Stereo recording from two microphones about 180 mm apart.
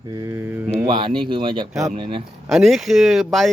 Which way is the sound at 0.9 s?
25° right (ahead or behind).